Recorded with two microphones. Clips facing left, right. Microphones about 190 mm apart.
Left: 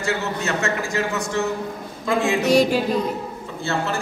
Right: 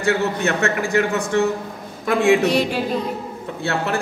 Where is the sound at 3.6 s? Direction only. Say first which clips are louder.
Right 2 dB; 60° right (ahead or behind).